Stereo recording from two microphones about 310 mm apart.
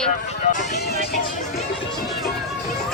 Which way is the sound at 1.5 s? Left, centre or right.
Centre.